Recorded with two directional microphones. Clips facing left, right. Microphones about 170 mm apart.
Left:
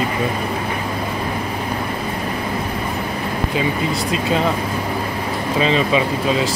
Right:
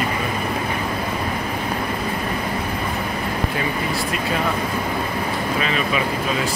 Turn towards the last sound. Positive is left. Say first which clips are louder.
# left 5 dB
turn(degrees=25)  # may be behind; listen again after turning